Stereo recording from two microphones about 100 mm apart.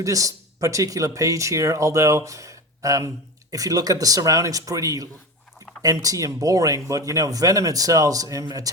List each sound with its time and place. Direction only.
0.0 s speech: 35° right (ahead or behind)